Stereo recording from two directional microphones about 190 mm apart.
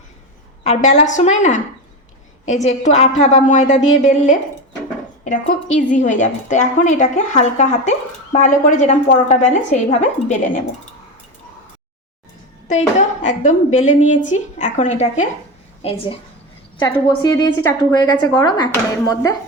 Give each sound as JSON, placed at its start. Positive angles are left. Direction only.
{"t": 0.6, "sound": "a woman's voice", "side_deg": 35}
{"t": 5.8, "sound": "a woman's voice", "side_deg": 40}
{"t": 12.6, "sound": "a woman's voice", "side_deg": 40}